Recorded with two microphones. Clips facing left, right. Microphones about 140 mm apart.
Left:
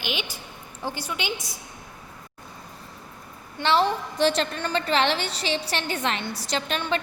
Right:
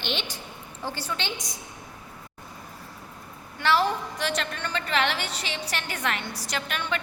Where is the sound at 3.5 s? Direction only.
25° left (ahead or behind).